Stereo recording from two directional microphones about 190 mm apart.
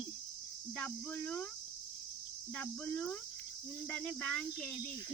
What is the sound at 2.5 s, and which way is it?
Speech, 10° left (ahead or behind).